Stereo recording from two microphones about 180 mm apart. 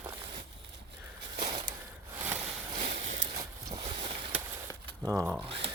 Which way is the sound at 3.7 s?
25° right (ahead or behind).